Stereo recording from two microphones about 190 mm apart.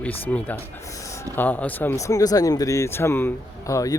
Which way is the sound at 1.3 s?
10° left (ahead or behind).